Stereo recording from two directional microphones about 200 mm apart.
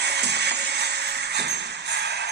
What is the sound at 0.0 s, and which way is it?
Music, 55° right (ahead or behind).